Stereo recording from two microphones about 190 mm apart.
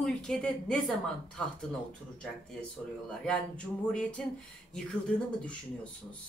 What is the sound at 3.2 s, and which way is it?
Speech, 5° left (ahead or behind).